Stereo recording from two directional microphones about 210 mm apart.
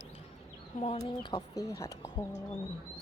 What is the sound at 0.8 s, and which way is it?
Speech, 30° left (ahead or behind).